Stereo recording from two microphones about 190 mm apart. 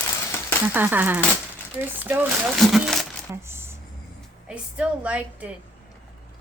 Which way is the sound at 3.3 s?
15° right (ahead or behind).